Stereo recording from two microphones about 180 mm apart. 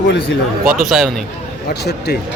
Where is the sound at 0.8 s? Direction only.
5° right (ahead or behind).